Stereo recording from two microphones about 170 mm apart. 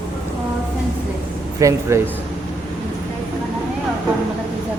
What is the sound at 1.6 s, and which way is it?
Speech, 20° right (ahead or behind).